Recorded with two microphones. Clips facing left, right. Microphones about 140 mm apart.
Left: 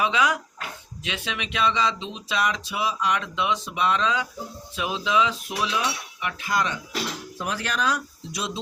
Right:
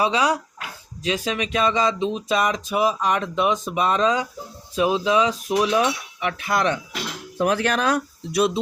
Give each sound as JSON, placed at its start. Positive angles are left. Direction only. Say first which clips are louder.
{"t": 0.0, "sound": "speech", "louder": "right 3 dB", "side_deg": -35}